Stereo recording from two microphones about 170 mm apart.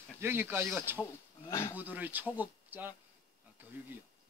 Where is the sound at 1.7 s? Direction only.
10° right (ahead or behind).